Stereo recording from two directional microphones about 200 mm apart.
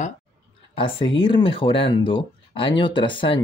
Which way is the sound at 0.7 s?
25° left (ahead or behind).